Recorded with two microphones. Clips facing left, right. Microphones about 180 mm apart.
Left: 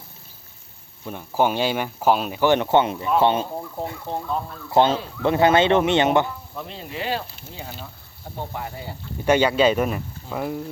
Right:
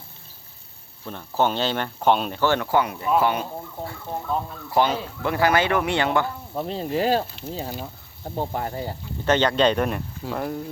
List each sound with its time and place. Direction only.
1.0 s speech: 10° left (ahead or behind)
2.4 s speech: 20° left (ahead or behind)
6.6 s speech: 40° right (ahead or behind)
9.2 s speech: 10° left (ahead or behind)